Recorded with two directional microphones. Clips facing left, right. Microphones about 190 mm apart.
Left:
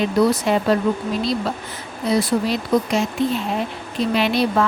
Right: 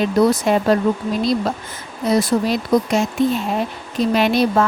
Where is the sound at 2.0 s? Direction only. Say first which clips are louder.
Right 2 dB; 45° right (ahead or behind).